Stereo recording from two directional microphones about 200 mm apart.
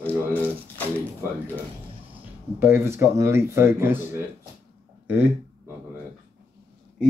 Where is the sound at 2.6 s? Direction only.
10° right (ahead or behind).